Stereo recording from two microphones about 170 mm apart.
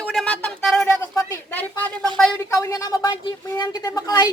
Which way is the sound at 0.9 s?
15° left (ahead or behind).